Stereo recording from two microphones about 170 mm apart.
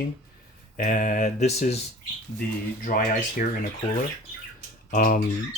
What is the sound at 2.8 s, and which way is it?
Speech, 55° left (ahead or behind).